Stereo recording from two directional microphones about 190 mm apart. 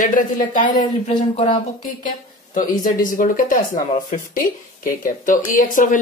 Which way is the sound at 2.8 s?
45° left (ahead or behind).